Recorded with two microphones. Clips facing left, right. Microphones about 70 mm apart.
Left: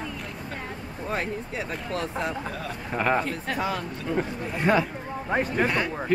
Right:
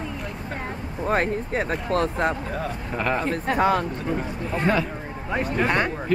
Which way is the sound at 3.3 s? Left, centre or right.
Right.